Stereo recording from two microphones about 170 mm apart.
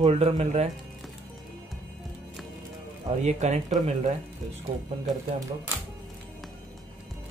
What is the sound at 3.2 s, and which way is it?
Speech, 40° right (ahead or behind).